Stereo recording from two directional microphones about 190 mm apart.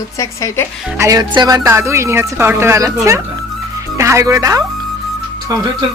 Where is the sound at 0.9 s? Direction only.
15° right (ahead or behind).